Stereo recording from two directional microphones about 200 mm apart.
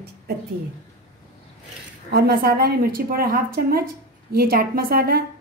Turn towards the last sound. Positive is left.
turn(degrees=-50)  # may be behind; listen again after turning